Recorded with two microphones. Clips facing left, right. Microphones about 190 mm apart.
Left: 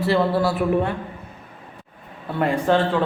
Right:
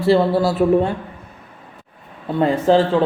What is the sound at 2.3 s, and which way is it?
Speech, 25° right (ahead or behind).